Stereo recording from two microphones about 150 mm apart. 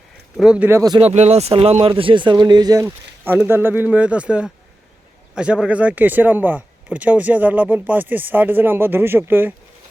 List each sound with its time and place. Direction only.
0.3 s speech: 5° right (ahead or behind)
0.8 s speech: 25° right (ahead or behind)
1.0 s speech: 45° right (ahead or behind); by 9.5 s 15° right (ahead or behind)